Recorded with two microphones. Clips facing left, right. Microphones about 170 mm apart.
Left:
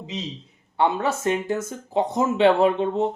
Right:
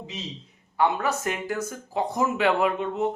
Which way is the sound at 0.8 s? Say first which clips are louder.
Left 2 dB; 25° left (ahead or behind).